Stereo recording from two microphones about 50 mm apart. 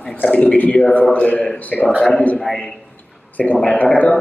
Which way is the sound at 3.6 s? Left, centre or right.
Left.